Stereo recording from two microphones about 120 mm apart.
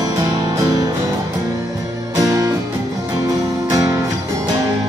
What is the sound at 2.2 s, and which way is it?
Music, 30° right (ahead or behind).